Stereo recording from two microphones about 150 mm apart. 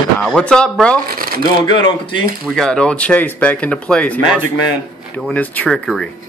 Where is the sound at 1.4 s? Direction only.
30° left (ahead or behind).